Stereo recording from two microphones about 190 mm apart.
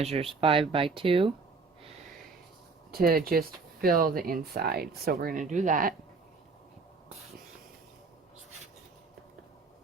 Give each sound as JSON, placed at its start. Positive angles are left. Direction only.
{"t": 0.0, "sound": "speech", "side_deg": -30}
{"t": 2.9, "sound": "speech", "side_deg": -50}